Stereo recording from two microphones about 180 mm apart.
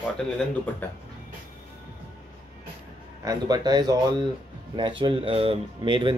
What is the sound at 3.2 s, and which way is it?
Speech, 20° right (ahead or behind).